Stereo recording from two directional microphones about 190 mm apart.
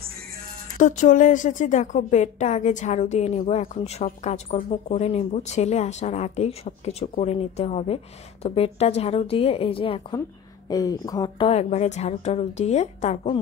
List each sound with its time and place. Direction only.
0.7 s a woman's voice: 40° left (ahead or behind)